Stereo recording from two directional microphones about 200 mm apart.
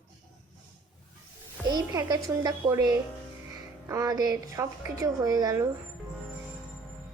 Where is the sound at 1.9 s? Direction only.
20° right (ahead or behind).